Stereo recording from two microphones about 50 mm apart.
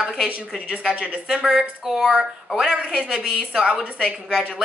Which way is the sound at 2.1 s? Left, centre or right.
Centre.